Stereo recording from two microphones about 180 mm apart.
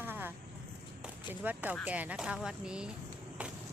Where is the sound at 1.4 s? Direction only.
10° right (ahead or behind).